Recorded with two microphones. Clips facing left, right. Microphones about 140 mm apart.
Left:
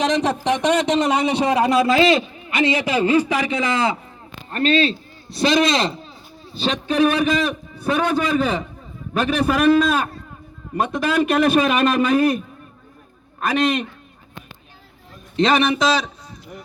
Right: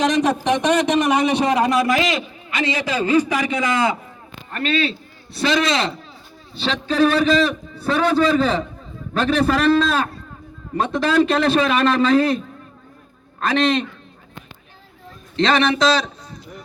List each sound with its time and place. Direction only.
0.0 s a man's voice: 25° left (ahead or behind)
0.3 s speech: 20° right (ahead or behind)
0.6 s a man's voice: 25° left (ahead or behind)
13.4 s a man's voice: 10° left (ahead or behind)
15.4 s a man's voice: 10° left (ahead or behind)